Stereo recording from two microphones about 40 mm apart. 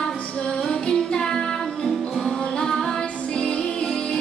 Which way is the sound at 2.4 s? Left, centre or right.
Left.